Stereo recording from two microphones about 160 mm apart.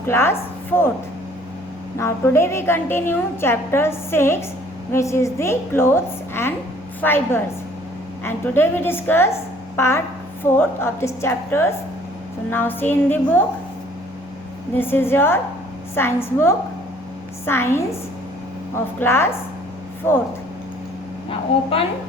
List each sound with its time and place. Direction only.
0.1 s a woman's voice: 15° left (ahead or behind)
2.0 s a woman's voice: 15° left (ahead or behind)
14.8 s a woman's voice: 15° left (ahead or behind)
18.9 s a woman's voice: 15° left (ahead or behind)
21.2 s a woman's voice: 35° left (ahead or behind)